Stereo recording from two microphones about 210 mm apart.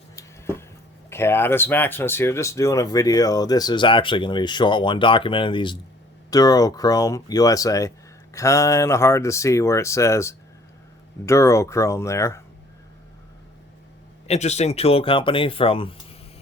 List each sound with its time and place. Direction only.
0.2 s a sound: 10° left (ahead or behind)
1.1 s speech: 10° left (ahead or behind)
14.3 s speech: 30° left (ahead or behind)